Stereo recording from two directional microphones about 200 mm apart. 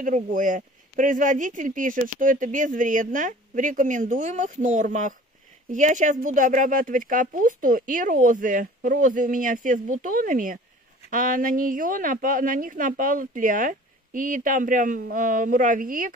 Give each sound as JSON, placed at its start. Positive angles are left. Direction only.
{"t": 0.0, "sound": "a woman's voice", "side_deg": -40}